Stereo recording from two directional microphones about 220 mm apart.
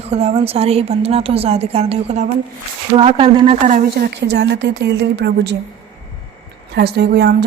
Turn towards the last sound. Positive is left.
turn(degrees=-50)  # may be behind; listen again after turning